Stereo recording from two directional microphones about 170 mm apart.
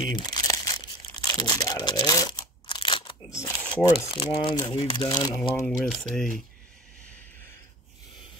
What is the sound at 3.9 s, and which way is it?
Speech, 30° left (ahead or behind).